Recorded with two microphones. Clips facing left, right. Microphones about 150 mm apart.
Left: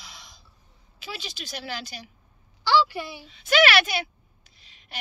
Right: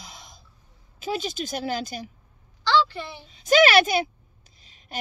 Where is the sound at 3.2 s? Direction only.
40° right (ahead or behind).